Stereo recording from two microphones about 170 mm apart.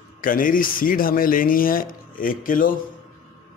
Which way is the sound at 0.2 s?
55° left (ahead or behind).